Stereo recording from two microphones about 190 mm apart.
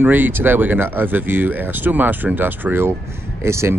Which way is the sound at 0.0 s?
10° right (ahead or behind).